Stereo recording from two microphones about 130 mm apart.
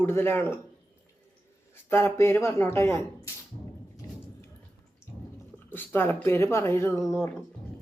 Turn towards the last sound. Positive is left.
turn(degrees=5)  # may be behind; listen again after turning